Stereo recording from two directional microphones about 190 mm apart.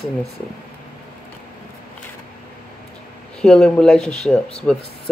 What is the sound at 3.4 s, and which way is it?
Speech, 5° left (ahead or behind).